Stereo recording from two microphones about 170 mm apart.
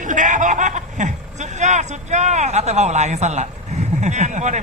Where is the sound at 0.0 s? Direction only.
50° right (ahead or behind).